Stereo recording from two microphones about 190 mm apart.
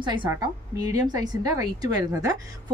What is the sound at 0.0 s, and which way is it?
A woman's voice, 25° right (ahead or behind).